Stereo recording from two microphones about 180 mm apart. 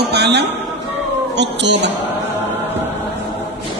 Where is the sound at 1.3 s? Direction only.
75° right (ahead or behind).